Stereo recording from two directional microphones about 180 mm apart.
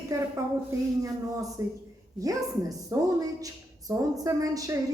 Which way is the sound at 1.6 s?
20° right (ahead or behind).